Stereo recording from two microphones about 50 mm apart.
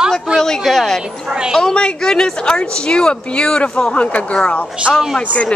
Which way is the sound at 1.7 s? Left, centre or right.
Centre.